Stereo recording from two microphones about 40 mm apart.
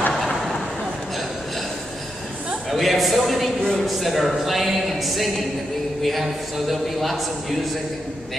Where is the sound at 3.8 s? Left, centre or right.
Centre.